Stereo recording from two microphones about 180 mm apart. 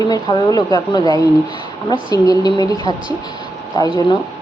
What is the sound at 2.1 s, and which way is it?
A woman's voice, 20° left (ahead or behind).